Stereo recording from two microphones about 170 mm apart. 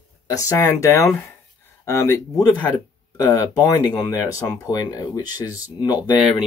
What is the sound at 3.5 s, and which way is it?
Speech, 20° left (ahead or behind).